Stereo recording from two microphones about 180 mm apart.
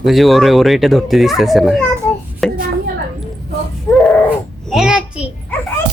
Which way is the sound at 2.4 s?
Centre (ahead or behind).